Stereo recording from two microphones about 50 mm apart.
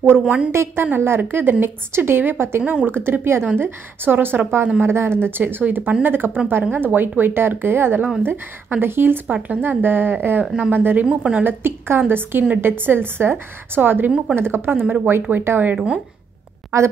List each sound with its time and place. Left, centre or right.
0.5 s speech: right
0.9 s a woman's voice: right
2.6 s a woman's voice: right
2.9 s a woman's voice: right
5.4 s a woman's voice: right
10.4 s a woman's voice: right
10.7 s a woman's voice: right
11.1 s a woman's voice: right
11.4 s a woman's voice: right
14.3 s a woman's voice: right
15.7 s a woman's voice: right